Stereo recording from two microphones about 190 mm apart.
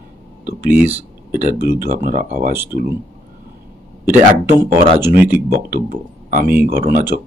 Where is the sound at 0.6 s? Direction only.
10° right (ahead or behind).